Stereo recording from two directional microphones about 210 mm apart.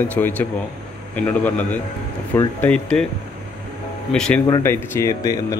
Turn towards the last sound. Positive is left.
turn(degrees=15)  # may be behind; listen again after turning